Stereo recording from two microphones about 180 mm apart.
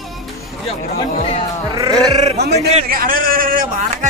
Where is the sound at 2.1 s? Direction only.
40° right (ahead or behind).